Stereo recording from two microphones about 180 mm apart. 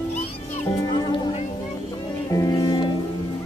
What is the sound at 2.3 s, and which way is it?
Music, 20° left (ahead or behind).